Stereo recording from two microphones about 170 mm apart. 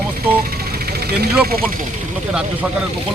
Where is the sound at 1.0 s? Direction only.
70° right (ahead or behind).